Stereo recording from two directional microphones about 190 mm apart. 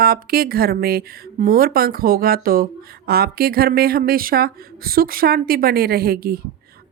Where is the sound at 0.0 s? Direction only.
50° right (ahead or behind).